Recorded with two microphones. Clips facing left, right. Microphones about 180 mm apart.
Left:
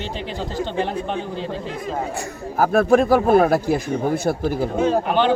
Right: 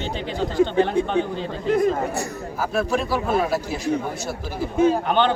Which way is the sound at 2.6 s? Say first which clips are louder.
Left 8 dB; 55° left (ahead or behind).